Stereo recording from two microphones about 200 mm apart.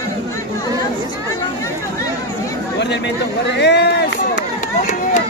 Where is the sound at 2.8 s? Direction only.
60° left (ahead or behind).